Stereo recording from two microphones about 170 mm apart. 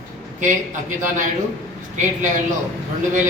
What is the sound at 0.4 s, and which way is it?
A man's voice, 50° right (ahead or behind).